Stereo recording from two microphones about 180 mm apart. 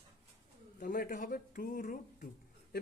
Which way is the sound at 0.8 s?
50° left (ahead or behind).